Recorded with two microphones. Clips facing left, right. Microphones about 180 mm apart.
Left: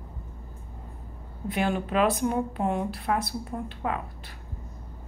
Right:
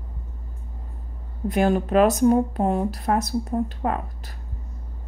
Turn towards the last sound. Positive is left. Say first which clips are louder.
# right 6 dB
turn(degrees=-40)  # may be behind; listen again after turning